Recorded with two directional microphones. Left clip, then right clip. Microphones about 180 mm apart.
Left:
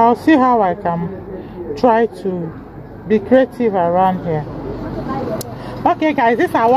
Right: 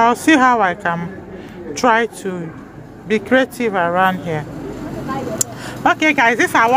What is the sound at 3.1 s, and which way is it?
A woman's voice, 15° left (ahead or behind).